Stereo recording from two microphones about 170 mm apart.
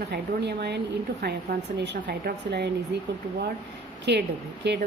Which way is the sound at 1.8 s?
90° right.